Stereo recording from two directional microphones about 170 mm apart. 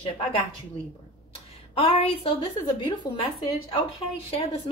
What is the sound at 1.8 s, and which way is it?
A woman's voice, 35° left (ahead or behind).